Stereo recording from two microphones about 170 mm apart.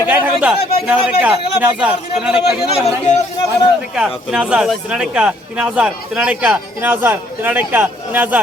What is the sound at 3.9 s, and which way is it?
Speech, 5° right (ahead or behind).